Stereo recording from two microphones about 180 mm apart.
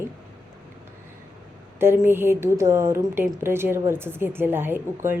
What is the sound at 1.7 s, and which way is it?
A woman's voice, 15° right (ahead or behind).